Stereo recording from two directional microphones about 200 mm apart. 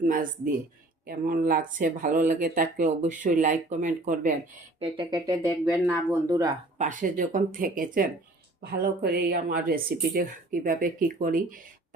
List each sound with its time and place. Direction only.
0.0 s speech: 45° right (ahead or behind)
4.8 s speech: 20° right (ahead or behind)
6.7 s speech: 40° right (ahead or behind)